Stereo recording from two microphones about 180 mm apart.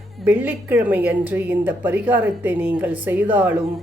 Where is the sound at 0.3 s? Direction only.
10° right (ahead or behind).